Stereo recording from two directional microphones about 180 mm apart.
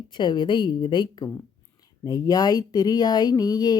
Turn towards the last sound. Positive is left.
turn(degrees=20)  # may be behind; listen again after turning